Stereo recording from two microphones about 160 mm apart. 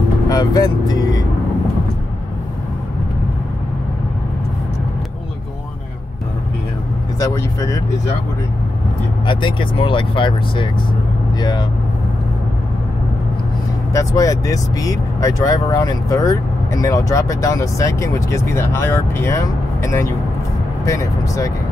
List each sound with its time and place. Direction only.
0.3 s vehicle: 25° left (ahead or behind)
7.2 s speech: 20° left (ahead or behind)
9.2 s speech: 30° left (ahead or behind)
13.9 s speech: 20° left (ahead or behind)